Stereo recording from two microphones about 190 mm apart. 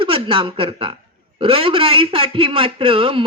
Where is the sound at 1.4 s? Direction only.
30° right (ahead or behind).